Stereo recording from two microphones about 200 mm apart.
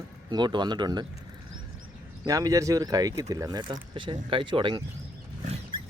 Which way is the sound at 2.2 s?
20° right (ahead or behind).